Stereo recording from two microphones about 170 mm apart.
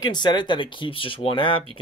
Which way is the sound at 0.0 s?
25° left (ahead or behind).